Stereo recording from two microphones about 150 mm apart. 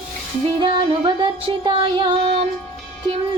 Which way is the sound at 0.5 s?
30° right (ahead or behind).